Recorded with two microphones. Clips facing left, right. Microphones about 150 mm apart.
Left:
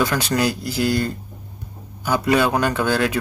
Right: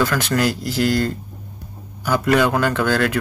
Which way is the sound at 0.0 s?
15° left (ahead or behind).